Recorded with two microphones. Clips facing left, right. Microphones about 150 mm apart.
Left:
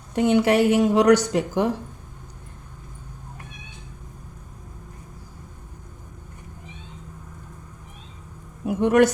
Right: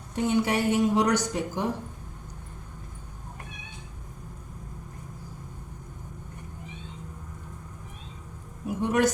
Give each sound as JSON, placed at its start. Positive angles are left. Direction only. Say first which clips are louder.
{"t": 0.1, "sound": "a woman's voice", "louder": "left 7 dB", "side_deg": 80}
{"t": 8.6, "sound": "speech", "louder": "left 8 dB", "side_deg": 65}